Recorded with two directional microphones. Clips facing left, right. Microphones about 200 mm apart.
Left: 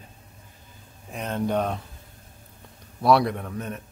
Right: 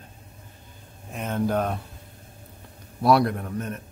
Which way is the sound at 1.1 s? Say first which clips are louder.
Right 1 dB; 5° right (ahead or behind).